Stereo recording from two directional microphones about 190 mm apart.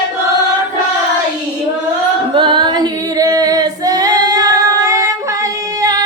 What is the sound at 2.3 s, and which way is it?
Female singing, 25° right (ahead or behind).